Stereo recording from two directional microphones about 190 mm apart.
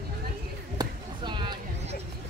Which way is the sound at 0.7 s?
25° right (ahead or behind).